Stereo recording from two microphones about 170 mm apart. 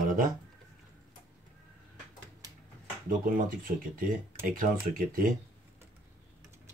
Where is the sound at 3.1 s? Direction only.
55° right (ahead or behind).